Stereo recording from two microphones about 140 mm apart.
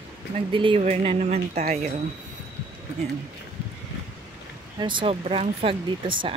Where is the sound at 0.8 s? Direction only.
55° right (ahead or behind).